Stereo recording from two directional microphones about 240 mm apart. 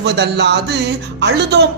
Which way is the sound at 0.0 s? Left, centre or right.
Right.